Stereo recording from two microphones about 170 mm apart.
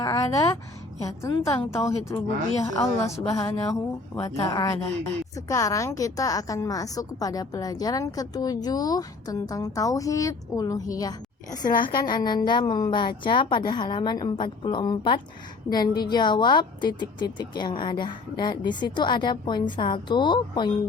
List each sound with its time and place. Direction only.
0.0 s a sound: 20° left (ahead or behind)
1.0 s a woman's voice: 20° left (ahead or behind)
11.7 s a woman's voice: 55° left (ahead or behind)
12.0 s a woman's voice: 25° left (ahead or behind)